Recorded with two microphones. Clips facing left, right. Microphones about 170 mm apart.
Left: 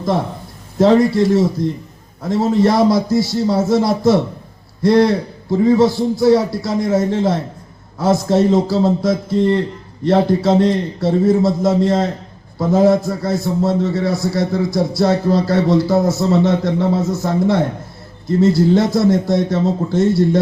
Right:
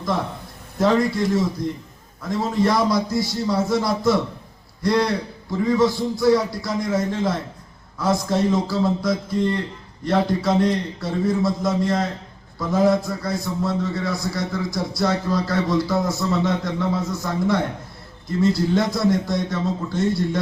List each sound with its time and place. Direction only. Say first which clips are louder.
0.8 s a man's voice: left 7 dB; 25° left (ahead or behind)